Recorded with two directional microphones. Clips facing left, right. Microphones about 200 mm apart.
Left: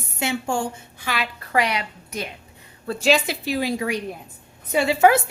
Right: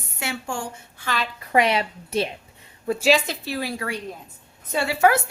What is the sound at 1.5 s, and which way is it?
Speech, 25° right (ahead or behind).